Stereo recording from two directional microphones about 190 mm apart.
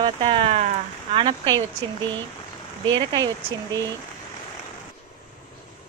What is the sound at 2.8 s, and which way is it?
Speech, 25° right (ahead or behind).